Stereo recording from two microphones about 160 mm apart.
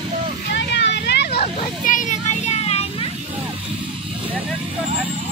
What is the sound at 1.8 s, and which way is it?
Children playing, 50° left (ahead or behind).